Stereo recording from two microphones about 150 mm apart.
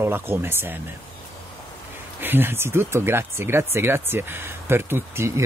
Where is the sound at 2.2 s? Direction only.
15° right (ahead or behind).